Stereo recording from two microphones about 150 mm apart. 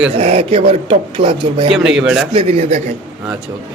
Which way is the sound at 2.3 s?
40° right (ahead or behind).